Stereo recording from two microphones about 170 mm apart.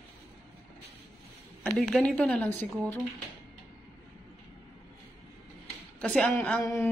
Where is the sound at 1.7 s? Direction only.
5° left (ahead or behind).